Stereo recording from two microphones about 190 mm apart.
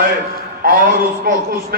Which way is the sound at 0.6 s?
50° right (ahead or behind).